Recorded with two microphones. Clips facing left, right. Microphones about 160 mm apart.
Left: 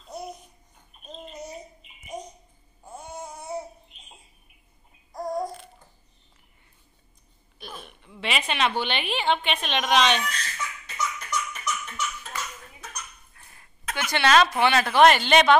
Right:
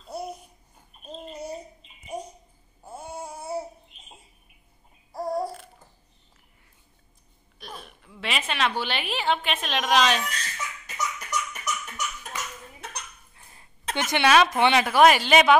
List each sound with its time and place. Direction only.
0.1 s babbling: 10° right (ahead or behind)
2.1 s a sound: 10° right (ahead or behind)
2.8 s babbling: 10° right (ahead or behind)
5.1 s babbling: 5° right (ahead or behind)
7.5 s a woman's voice: centre (ahead or behind)
11.0 s laughter: 15° right (ahead or behind)
13.3 s cough: 20° right (ahead or behind)
14.1 s speech: 10° right (ahead or behind)